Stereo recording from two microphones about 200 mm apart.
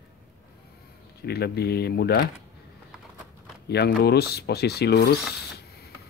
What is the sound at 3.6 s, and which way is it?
Speech, 55° left (ahead or behind).